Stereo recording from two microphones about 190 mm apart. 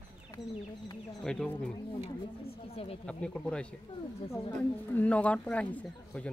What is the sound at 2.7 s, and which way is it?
Speech, 30° left (ahead or behind).